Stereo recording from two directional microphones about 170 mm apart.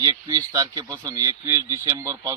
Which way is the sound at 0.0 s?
20° right (ahead or behind).